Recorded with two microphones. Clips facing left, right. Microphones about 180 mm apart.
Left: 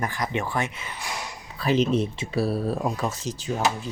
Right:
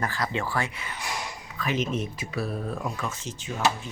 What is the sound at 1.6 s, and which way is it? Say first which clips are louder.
Speech: left 6 dB; 35° left (ahead or behind).